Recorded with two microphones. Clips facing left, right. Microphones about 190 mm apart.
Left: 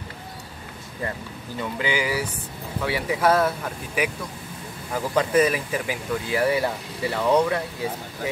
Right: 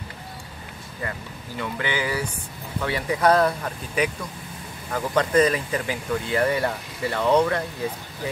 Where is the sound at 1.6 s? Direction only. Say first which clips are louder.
Left 1 dB; 15° left (ahead or behind).